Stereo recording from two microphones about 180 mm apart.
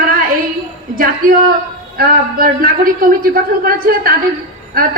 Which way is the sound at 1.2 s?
50° right (ahead or behind).